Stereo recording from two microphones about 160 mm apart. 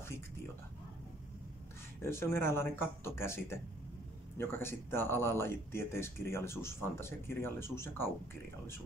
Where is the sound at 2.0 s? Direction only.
15° left (ahead or behind).